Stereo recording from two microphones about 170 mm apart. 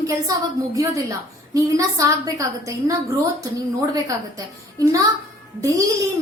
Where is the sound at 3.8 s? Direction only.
20° right (ahead or behind).